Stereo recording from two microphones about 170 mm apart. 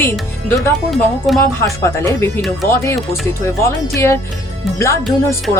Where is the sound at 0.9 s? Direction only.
Centre (ahead or behind).